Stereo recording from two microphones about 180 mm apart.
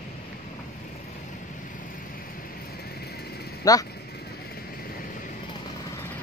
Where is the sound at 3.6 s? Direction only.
20° left (ahead or behind).